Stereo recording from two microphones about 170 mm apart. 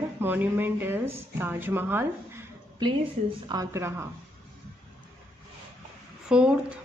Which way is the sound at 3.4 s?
20° right (ahead or behind).